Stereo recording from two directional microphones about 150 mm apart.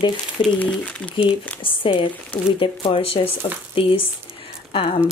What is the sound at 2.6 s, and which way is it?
Speech, 35° left (ahead or behind).